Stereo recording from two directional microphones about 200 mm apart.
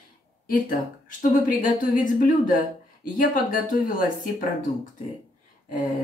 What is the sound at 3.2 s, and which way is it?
Speech, 45° left (ahead or behind).